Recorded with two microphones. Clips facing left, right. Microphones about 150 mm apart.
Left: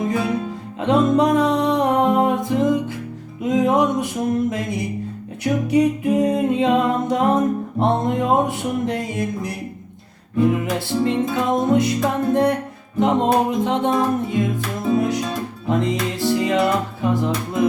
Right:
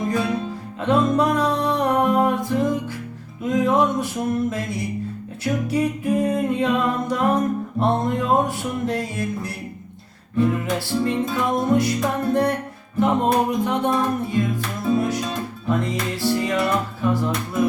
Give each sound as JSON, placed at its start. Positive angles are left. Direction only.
{"t": 0.8, "sound": "music", "side_deg": 20}